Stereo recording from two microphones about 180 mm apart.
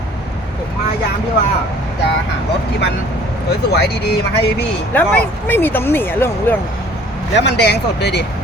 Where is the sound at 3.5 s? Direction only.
65° left (ahead or behind).